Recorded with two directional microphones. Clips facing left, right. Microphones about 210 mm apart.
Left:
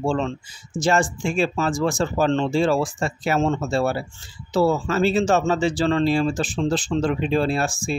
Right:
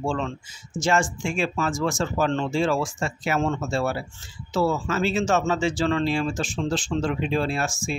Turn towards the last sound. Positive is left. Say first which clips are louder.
# left 4 dB
turn(degrees=35)  # may be behind; listen again after turning